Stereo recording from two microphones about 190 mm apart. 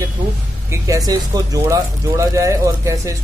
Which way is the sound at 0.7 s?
15° right (ahead or behind).